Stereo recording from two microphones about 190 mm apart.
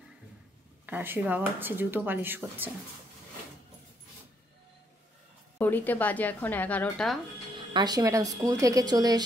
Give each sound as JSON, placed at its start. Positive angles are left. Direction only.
{"t": 0.8, "sound": "speech", "side_deg": -10}
{"t": 5.6, "sound": "speech", "side_deg": 10}
{"t": 7.5, "sound": "speech", "side_deg": -25}